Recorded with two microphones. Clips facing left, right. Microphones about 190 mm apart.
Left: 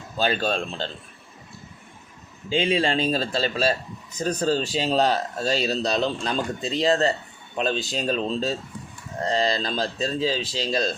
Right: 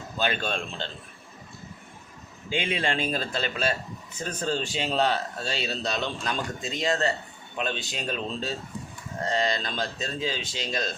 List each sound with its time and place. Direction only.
0.2 s speech: 35° left (ahead or behind)
2.5 s speech: 30° left (ahead or behind)